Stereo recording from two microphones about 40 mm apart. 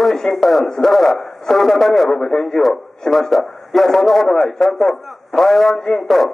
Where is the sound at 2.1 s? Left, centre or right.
Centre.